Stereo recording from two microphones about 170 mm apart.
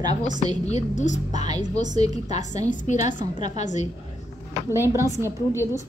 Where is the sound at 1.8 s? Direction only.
25° right (ahead or behind).